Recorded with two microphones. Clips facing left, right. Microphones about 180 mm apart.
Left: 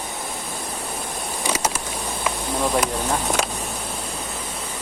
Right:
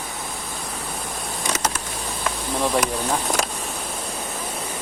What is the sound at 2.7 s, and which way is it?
Speech, centre (ahead or behind).